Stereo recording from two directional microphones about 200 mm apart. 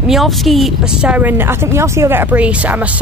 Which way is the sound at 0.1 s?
Centre (ahead or behind).